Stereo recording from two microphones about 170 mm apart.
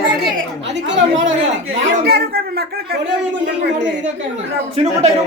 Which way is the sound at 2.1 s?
65° right (ahead or behind).